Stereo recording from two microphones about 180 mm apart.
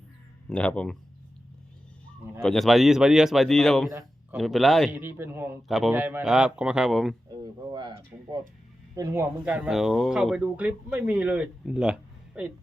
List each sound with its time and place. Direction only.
0.5 s speech: 5° left (ahead or behind)
2.4 s speech: centre (ahead or behind)
3.8 s a sound: 15° right (ahead or behind)
4.4 s a man's voice: centre (ahead or behind)
5.6 s speech: centre (ahead or behind)
7.7 s a man's voice: 25° right (ahead or behind)
9.4 s speech: 5° right (ahead or behind)